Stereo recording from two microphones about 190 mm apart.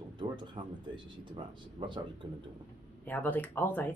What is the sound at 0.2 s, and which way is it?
Speech, 25° right (ahead or behind).